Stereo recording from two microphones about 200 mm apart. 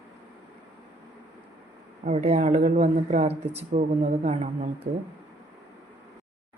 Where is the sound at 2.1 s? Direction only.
35° right (ahead or behind).